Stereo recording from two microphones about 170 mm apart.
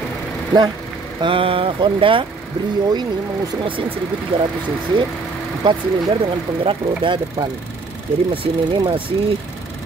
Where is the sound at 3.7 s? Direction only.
30° right (ahead or behind).